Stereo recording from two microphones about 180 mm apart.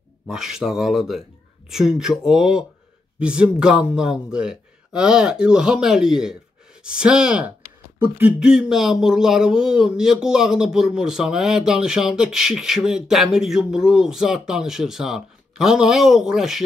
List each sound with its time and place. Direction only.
0.3 s speech: 5° right (ahead or behind)